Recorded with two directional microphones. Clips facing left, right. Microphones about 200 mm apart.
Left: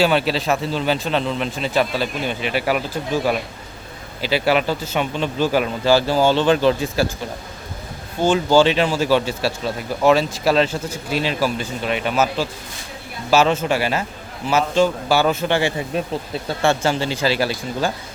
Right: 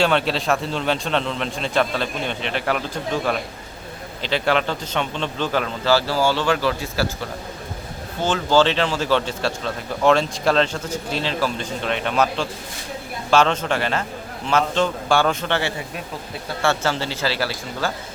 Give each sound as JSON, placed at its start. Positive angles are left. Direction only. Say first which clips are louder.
{"t": 0.0, "sound": "a man's voice", "louder": "left 2 dB", "side_deg": 5}
{"t": 8.2, "sound": "speech", "louder": "left 3 dB", "side_deg": 10}